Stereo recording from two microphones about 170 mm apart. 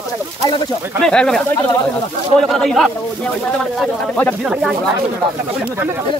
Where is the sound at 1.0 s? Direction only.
5° left (ahead or behind).